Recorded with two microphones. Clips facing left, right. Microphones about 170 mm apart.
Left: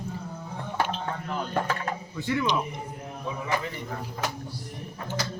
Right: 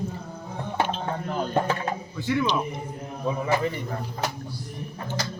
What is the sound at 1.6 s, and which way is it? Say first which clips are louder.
Speech: right 4 dB; 25° right (ahead or behind).